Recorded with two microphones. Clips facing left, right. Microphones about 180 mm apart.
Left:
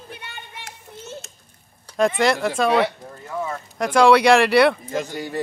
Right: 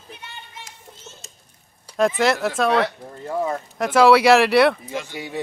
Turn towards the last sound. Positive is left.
turn(degrees=0)  # may be behind; listen again after turning